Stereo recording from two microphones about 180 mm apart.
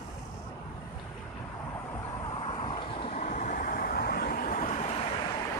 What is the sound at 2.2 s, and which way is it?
Vehicle, 30° left (ahead or behind).